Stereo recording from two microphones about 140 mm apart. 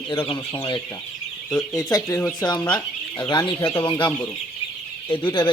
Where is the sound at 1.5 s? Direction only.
5° left (ahead or behind).